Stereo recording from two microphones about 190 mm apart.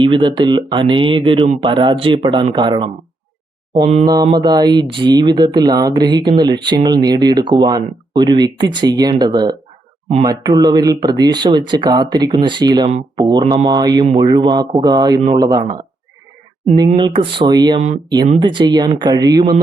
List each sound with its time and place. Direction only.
0.0 s speech: 25° right (ahead or behind)
16.9 s speech: 30° right (ahead or behind)
17.7 s speech: 35° right (ahead or behind)
18.3 s speech: 25° right (ahead or behind)